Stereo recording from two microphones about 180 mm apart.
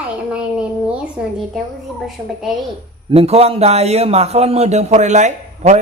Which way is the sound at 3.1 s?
35° right (ahead or behind).